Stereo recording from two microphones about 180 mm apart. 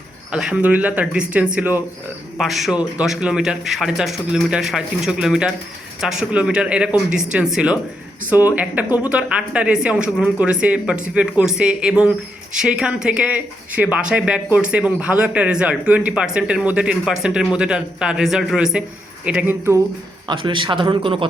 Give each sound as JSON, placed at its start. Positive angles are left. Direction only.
{"t": 0.3, "sound": "a man's voice", "side_deg": -5}
{"t": 20.2, "sound": "speech", "side_deg": -25}